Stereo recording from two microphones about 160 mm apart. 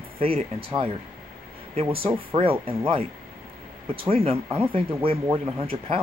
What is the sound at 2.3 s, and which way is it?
Speech, 35° right (ahead or behind).